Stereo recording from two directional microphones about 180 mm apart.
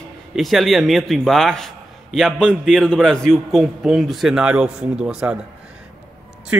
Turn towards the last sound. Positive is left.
turn(degrees=-5)  # may be behind; listen again after turning